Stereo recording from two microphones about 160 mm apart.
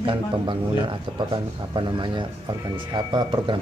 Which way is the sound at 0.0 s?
30° right (ahead or behind).